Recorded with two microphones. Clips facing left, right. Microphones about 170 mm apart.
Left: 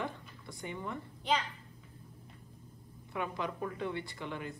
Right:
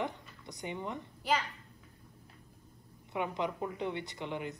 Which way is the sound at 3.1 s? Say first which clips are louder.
Right 2 dB; 20° right (ahead or behind).